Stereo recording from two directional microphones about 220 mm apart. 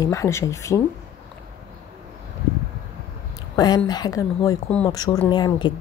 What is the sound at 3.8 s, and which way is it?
Speech, 15° left (ahead or behind).